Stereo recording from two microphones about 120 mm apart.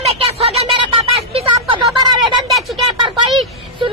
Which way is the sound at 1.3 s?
45° right (ahead or behind).